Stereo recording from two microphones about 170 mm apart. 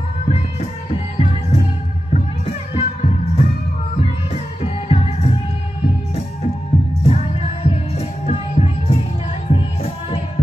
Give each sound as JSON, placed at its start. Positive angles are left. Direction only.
{"t": 0.3, "sound": "music", "side_deg": 35}
{"t": 7.0, "sound": "music", "side_deg": 40}